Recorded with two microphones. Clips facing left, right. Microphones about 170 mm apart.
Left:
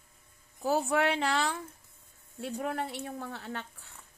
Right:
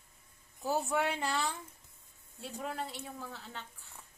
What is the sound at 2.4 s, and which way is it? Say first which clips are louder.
A woman's voice: left 6 dB; 60° left (ahead or behind).